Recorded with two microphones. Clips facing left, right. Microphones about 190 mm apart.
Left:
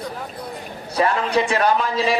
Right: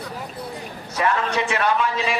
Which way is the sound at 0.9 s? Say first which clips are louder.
Left 3 dB; 35° left (ahead or behind).